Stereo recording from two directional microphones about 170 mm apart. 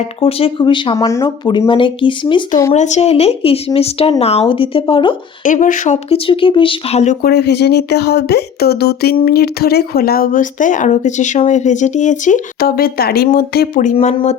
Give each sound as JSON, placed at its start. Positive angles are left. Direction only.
{"t": 0.2, "sound": "speech", "side_deg": 35}
{"t": 2.7, "sound": "speech", "side_deg": 45}
{"t": 5.4, "sound": "speech", "side_deg": 50}
{"t": 7.3, "sound": "speech", "side_deg": 75}
{"t": 13.9, "sound": "speech", "side_deg": 35}